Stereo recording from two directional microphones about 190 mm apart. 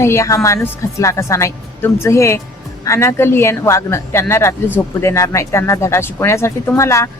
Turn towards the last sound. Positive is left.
turn(degrees=15)  # may be behind; listen again after turning